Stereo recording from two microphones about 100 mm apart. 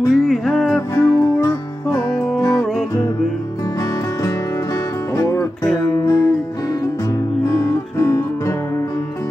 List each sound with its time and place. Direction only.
0.1 s music: centre (ahead or behind)
0.9 s music: 30° left (ahead or behind)
5.1 s music: 25° left (ahead or behind)
7.4 s music: 30° left (ahead or behind)